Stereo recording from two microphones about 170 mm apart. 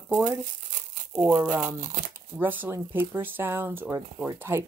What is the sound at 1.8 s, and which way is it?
Speech, 45° right (ahead or behind).